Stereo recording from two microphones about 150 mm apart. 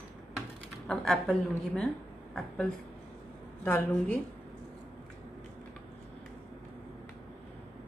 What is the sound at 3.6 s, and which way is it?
Speech, 10° left (ahead or behind).